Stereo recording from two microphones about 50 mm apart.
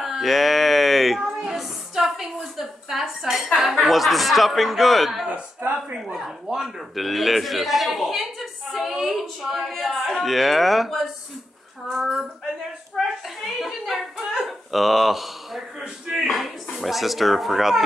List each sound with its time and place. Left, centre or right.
0.0 s speech: centre
1.2 s a woman's voice: centre
5.9 s a woman's voice: centre
12.9 s a sound: centre
15.8 s a sound: centre
16.3 s speech: centre